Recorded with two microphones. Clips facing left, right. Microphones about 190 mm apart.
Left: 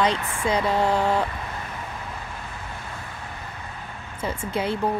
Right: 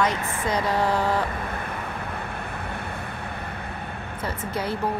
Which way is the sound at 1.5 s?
60° right (ahead or behind).